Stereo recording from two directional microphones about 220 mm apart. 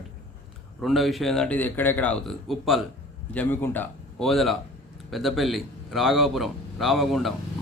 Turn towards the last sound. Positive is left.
turn(degrees=0)  # may be behind; listen again after turning